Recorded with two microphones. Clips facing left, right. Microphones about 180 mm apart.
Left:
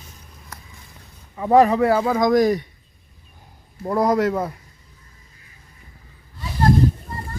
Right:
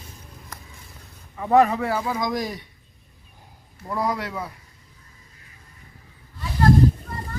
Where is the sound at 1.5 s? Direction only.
35° left (ahead or behind).